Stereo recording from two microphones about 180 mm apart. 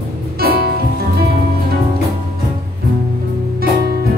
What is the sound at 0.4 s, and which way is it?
Music, 55° right (ahead or behind).